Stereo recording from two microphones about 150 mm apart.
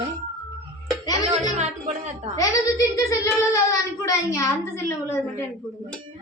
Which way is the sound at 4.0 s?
20° left (ahead or behind).